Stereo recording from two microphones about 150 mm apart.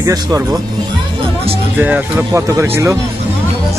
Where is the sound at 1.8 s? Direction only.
15° right (ahead or behind).